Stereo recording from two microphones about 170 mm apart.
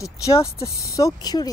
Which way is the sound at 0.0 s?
20° left (ahead or behind).